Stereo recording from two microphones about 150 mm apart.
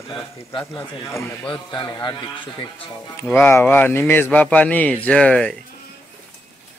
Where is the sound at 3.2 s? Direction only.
15° left (ahead or behind).